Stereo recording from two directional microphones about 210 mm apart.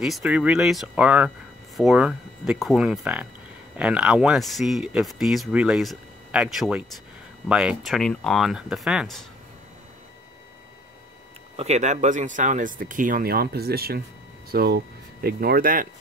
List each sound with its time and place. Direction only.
0.0 s speech: centre (ahead or behind)
11.5 s speech: 30° right (ahead or behind)